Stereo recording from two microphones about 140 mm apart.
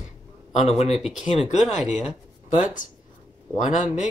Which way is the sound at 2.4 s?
60° left (ahead or behind).